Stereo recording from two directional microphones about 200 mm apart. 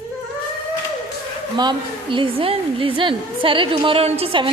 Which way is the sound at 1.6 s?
25° right (ahead or behind).